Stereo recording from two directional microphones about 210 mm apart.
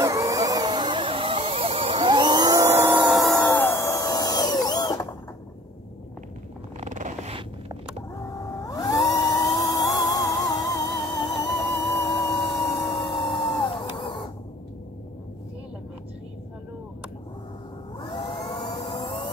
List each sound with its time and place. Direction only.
0.0 s a sound: 15° right (ahead or behind)
3.2 s music: centre (ahead or behind)
3.4 s music: 10° left (ahead or behind)
6.8 s purr: 35° right (ahead or behind)
8.4 s a sound: 15° left (ahead or behind)
10.0 s music: 15° left (ahead or behind)
17.9 s vacuum cleaner: 20° left (ahead or behind)